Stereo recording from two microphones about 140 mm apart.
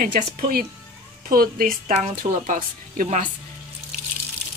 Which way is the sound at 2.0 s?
70° right (ahead or behind).